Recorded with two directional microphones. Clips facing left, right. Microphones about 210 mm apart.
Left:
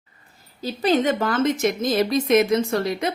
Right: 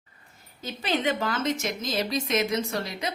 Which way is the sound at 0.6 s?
35° left (ahead or behind).